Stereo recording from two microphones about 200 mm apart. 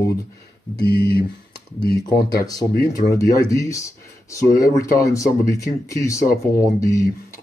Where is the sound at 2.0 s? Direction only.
20° left (ahead or behind).